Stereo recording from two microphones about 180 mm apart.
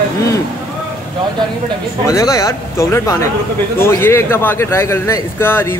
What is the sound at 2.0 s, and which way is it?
Speech, 20° left (ahead or behind).